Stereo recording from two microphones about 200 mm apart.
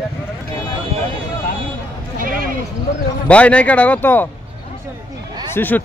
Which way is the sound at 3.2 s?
5° left (ahead or behind).